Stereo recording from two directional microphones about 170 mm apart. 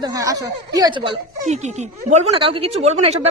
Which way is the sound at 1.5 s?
40° right (ahead or behind).